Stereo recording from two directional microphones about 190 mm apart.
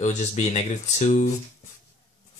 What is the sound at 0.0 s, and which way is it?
Speech, 35° left (ahead or behind).